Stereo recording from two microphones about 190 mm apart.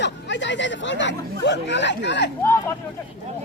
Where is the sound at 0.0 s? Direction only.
70° left (ahead or behind).